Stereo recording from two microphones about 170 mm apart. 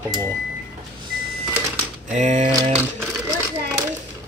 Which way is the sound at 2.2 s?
45° right (ahead or behind).